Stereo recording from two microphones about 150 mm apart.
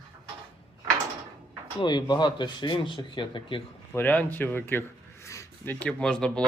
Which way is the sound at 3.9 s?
10° left (ahead or behind).